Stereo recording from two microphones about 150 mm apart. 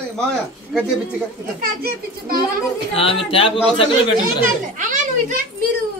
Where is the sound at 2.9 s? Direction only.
40° left (ahead or behind).